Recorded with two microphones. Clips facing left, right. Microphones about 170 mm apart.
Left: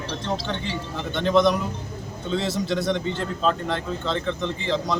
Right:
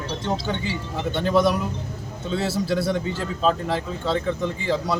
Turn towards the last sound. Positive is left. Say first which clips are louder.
# right 1 dB
turn(degrees=-10)  # may be behind; listen again after turning